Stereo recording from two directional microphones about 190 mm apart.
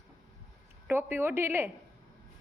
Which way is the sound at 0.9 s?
10° right (ahead or behind).